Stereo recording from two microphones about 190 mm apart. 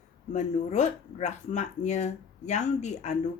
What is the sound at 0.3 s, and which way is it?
Speech, 40° left (ahead or behind).